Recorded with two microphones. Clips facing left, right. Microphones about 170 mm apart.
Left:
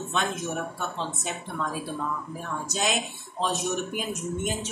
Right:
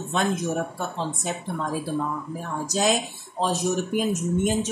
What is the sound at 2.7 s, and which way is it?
Speech, 35° right (ahead or behind).